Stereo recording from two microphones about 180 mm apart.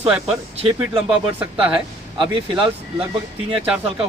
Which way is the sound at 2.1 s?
30° right (ahead or behind).